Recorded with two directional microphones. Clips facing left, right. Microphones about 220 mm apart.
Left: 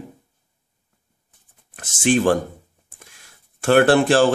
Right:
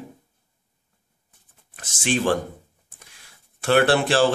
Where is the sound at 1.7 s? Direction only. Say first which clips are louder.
Left 6 dB; 50° left (ahead or behind).